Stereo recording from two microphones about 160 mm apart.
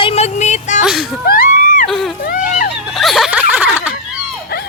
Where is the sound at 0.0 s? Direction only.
40° left (ahead or behind).